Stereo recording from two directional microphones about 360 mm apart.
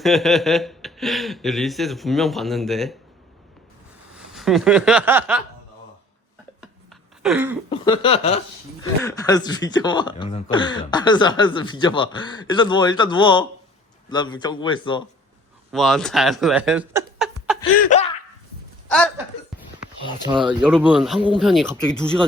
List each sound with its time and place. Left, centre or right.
0.0 s speech: centre
4.2 s speech: centre
6.6 s a sound: centre
7.7 s speech: centre
15.7 s speech: centre
17.9 s a sound: centre
18.9 s speech: centre
20.2 s speech: centre